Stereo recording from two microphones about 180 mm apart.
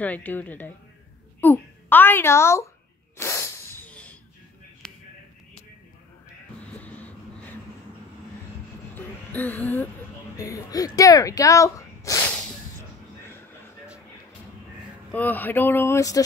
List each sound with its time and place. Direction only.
0.0 s a child's voice: 10° left (ahead or behind)
3.2 s sneeze: 15° left (ahead or behind)
4.8 s a sound: 5° left (ahead or behind)
6.8 s vehicle: 10° left (ahead or behind)
8.9 s a sound: 10° left (ahead or behind)
10.3 s speech: 20° left (ahead or behind)
15.1 s speech: 10° left (ahead or behind)